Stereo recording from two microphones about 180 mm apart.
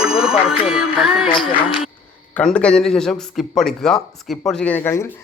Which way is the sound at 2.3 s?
5° left (ahead or behind).